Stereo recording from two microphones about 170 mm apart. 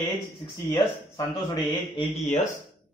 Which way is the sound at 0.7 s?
15° left (ahead or behind).